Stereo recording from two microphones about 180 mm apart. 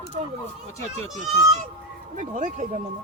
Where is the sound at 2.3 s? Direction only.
45° right (ahead or behind).